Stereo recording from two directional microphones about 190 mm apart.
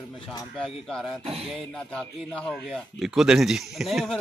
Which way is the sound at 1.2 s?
30° right (ahead or behind).